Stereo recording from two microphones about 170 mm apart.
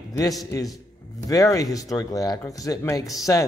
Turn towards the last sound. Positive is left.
turn(degrees=0)  # may be behind; listen again after turning